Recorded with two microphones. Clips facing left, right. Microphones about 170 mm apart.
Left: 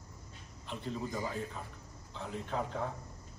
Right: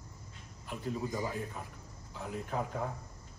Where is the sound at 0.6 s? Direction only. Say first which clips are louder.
Right 2 dB; 5° right (ahead or behind).